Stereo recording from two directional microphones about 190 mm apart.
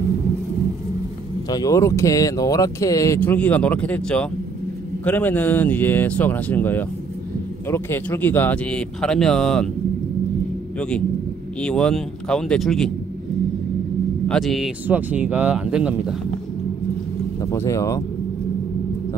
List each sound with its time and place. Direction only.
1.5 s speech: 20° left (ahead or behind)
11.6 s speech: 5° left (ahead or behind)
14.2 s speech: centre (ahead or behind)
17.4 s speech: 15° left (ahead or behind)